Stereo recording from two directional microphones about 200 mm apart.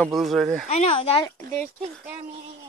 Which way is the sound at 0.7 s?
30° left (ahead or behind).